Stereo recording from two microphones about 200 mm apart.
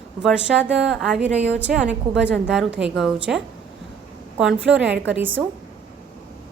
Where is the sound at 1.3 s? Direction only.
35° right (ahead or behind).